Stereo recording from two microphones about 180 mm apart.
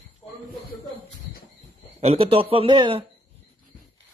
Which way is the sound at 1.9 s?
35° right (ahead or behind).